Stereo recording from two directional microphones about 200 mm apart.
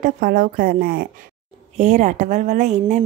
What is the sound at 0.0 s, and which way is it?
A woman's voice, 45° right (ahead or behind).